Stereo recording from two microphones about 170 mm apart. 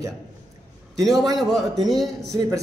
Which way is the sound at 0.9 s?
Centre (ahead or behind).